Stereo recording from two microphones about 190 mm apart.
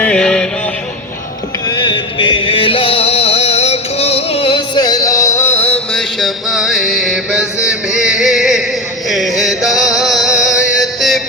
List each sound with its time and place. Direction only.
0.0 s music: 5° left (ahead or behind)
1.6 s music: 20° left (ahead or behind); by 11.2 s centre (ahead or behind)